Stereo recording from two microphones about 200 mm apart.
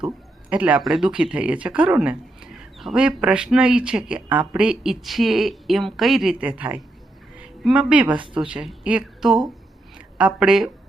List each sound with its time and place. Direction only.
0.5 s a woman's voice: 5° right (ahead or behind)